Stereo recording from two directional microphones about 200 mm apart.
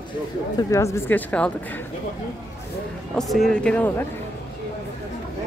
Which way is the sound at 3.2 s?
Centre (ahead or behind).